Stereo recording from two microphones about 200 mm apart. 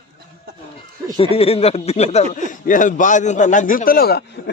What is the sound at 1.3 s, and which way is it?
A man's voice, 30° left (ahead or behind).